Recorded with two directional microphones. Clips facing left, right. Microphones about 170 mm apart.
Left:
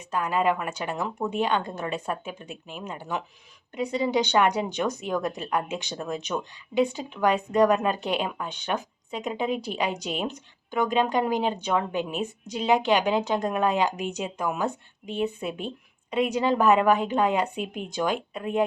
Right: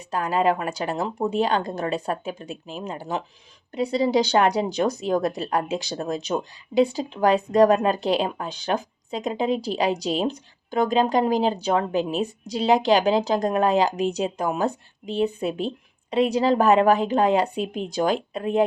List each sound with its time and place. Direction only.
0.1 s a woman's voice: 35° right (ahead or behind)